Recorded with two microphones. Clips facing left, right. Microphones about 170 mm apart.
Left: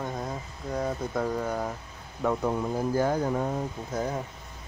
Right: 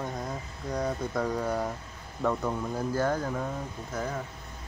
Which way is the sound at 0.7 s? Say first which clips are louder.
Left 1 dB; 5° left (ahead or behind).